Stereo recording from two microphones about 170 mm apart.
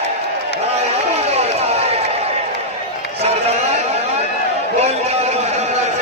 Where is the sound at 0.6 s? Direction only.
35° right (ahead or behind).